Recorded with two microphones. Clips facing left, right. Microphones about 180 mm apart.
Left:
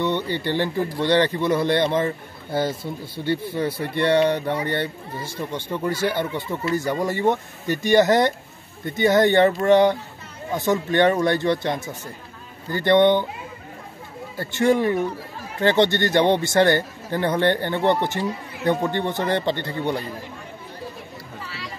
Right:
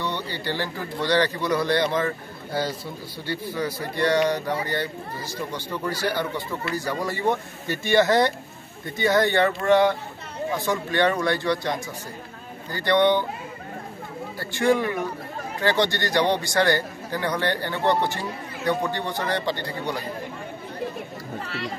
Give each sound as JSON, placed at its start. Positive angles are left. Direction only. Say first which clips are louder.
{"t": 0.0, "sound": "a man's voice", "louder": "left 6 dB", "side_deg": 20}
{"t": 7.6, "sound": "speech", "louder": "left 9 dB", "side_deg": 45}
{"t": 7.9, "sound": "a man's voice", "louder": "left 2 dB", "side_deg": 20}
{"t": 12.7, "sound": "a man's voice", "louder": "left 4 dB", "side_deg": 20}
{"t": 14.4, "sound": "a man's voice", "louder": "left 3 dB", "side_deg": 20}
{"t": 21.5, "sound": "speech", "louder": "right 7 dB", "side_deg": -55}